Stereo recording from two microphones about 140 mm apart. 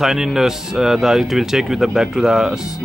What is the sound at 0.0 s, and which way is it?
Speech, centre (ahead or behind).